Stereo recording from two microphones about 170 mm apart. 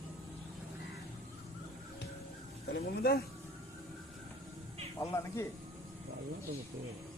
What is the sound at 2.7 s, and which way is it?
Speech, 65° left (ahead or behind).